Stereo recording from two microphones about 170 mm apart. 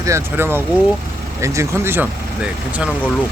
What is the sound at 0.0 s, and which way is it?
Speech, 15° right (ahead or behind).